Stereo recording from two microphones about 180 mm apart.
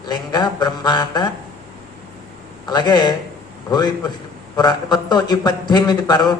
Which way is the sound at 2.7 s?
25° left (ahead or behind).